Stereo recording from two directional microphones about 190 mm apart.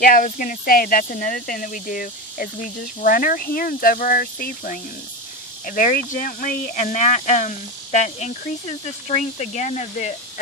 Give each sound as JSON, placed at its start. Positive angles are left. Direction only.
{"t": 0.0, "sound": "speech", "side_deg": 45}